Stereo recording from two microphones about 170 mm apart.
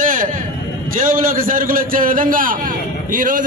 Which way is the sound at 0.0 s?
50° right (ahead or behind).